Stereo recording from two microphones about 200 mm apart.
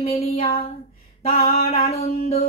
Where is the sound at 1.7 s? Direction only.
30° left (ahead or behind).